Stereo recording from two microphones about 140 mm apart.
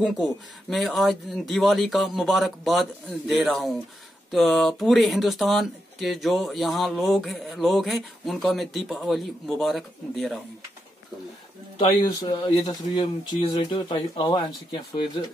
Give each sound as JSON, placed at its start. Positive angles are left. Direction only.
{"t": 0.0, "sound": "speech", "side_deg": 0}
{"t": 11.8, "sound": "speech", "side_deg": 30}